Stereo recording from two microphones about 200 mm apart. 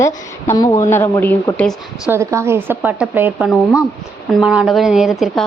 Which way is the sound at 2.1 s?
15° right (ahead or behind).